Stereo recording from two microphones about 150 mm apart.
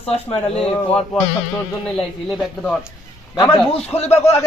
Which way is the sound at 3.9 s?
45° left (ahead or behind).